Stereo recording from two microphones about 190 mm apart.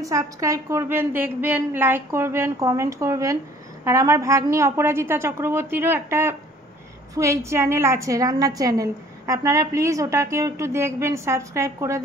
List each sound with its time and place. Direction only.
0.0 s a woman's voice: 15° right (ahead or behind)